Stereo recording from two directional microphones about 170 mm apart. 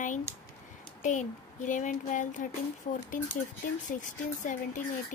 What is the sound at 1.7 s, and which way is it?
Speech, 45° left (ahead or behind).